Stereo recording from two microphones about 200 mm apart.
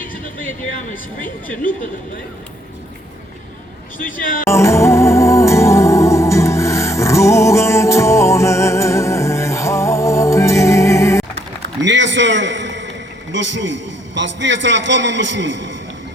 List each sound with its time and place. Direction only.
0.8 s speech: 40° left (ahead or behind)
3.9 s speech: 40° left (ahead or behind)
4.4 s music: 15° left (ahead or behind)
11.3 s a sound: 65° right (ahead or behind)
13.3 s a man's voice: 65° right (ahead or behind)